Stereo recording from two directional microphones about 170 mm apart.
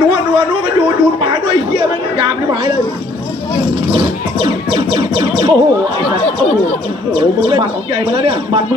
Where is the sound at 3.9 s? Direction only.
30° right (ahead or behind).